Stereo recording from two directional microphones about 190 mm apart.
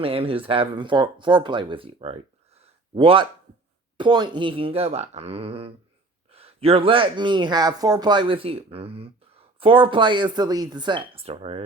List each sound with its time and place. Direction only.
0.0 s speech: 30° right (ahead or behind)
2.6 s a sound: 30° right (ahead or behind)
3.9 s speech: 25° right (ahead or behind)